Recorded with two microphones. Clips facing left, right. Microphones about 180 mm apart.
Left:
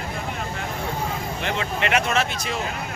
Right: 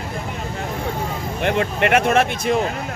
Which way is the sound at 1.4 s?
55° right (ahead or behind).